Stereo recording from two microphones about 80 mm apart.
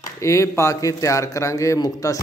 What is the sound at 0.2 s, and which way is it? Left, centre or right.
A man's voice, left.